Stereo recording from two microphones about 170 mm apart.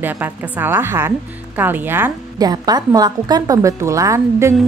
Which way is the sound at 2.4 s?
25° right (ahead or behind).